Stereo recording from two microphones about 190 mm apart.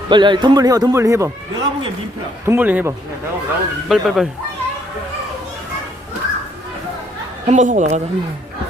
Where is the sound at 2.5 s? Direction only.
10° right (ahead or behind).